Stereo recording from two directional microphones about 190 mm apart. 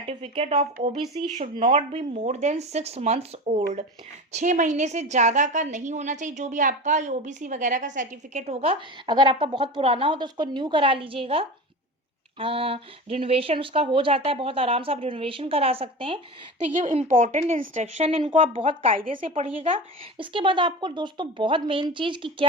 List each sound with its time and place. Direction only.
0.1 s a woman's voice: 30° right (ahead or behind)